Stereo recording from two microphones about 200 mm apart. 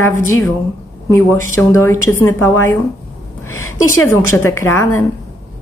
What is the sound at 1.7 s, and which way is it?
Speech, 10° left (ahead or behind).